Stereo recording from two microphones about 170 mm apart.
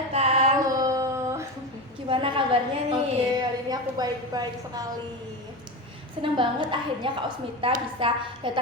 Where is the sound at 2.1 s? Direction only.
30° right (ahead or behind).